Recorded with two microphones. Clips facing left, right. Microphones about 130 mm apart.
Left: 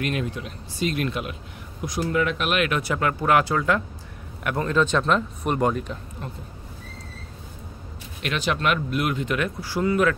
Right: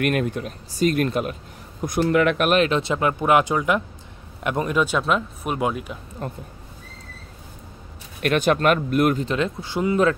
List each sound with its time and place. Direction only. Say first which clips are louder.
0.0 s speech: right 5 dB; 55° right (ahead or behind)
1.9 s speech: right 5 dB; 65° right (ahead or behind)
2.5 s speech: right 4 dB; 30° right (ahead or behind); by 5.9 s 5° right (ahead or behind)
6.2 s speech: right 10 dB; 45° right (ahead or behind)
8.2 s speech: right 6 dB; 50° right (ahead or behind)
9.2 s speech: right 2 dB; 25° right (ahead or behind)